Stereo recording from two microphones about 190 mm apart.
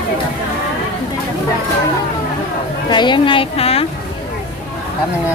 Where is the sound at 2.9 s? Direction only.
25° left (ahead or behind).